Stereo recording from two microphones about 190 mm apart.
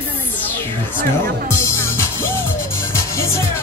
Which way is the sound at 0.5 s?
10° left (ahead or behind).